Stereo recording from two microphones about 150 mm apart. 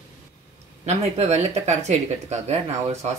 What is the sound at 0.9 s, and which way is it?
Speech, 45° right (ahead or behind).